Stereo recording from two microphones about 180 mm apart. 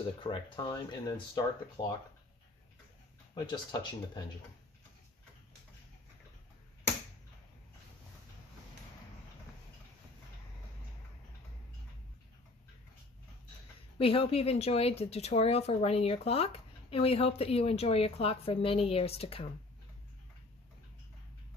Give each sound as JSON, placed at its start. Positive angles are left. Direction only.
{"t": 0.2, "sound": "speech", "side_deg": 25}
{"t": 3.3, "sound": "speech", "side_deg": 20}
{"t": 13.9, "sound": "a woman's voice", "side_deg": 30}